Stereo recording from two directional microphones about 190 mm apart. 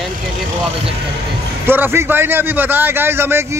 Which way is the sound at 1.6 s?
10° right (ahead or behind).